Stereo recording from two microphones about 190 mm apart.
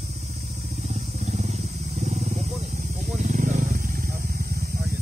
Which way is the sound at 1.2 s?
35° right (ahead or behind).